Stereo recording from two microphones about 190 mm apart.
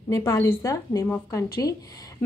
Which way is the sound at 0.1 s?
15° left (ahead or behind).